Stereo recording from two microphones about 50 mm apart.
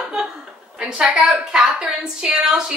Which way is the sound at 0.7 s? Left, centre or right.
Centre.